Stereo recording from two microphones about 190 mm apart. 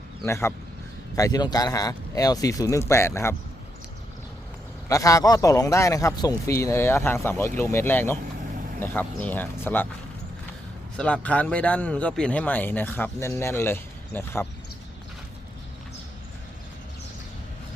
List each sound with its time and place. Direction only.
0.3 s a man's voice: 15° left (ahead or behind)
4.9 s a man's voice: 15° left (ahead or behind)
10.9 s a man's voice: 5° left (ahead or behind)